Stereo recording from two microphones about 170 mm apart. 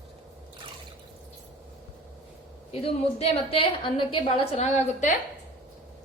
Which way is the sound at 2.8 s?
35° left (ahead or behind).